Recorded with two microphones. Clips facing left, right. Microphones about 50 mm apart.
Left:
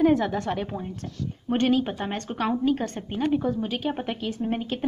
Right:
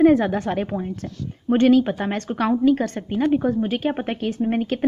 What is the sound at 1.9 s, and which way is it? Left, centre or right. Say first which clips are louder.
Speech: right 6 dB; right.